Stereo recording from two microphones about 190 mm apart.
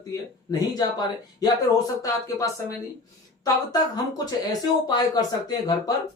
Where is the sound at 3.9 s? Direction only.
20° left (ahead or behind).